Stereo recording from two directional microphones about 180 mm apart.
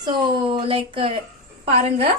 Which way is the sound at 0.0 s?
25° right (ahead or behind).